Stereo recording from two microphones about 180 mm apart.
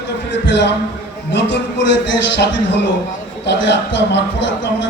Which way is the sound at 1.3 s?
75° left (ahead or behind).